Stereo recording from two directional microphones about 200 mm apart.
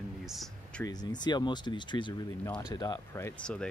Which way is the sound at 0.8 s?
20° left (ahead or behind).